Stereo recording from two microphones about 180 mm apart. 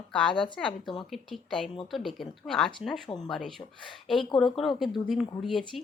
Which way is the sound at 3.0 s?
20° left (ahead or behind).